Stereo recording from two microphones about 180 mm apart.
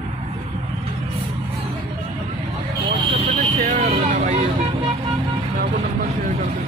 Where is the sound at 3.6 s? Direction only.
45° right (ahead or behind).